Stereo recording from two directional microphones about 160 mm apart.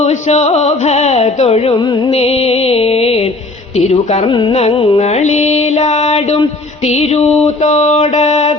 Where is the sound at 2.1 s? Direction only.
40° left (ahead or behind).